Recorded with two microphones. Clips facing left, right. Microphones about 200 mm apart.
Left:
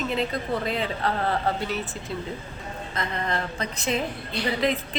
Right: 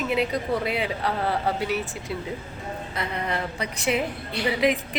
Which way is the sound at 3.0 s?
10° right (ahead or behind).